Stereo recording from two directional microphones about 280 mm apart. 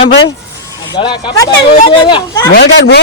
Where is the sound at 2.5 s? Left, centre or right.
Left.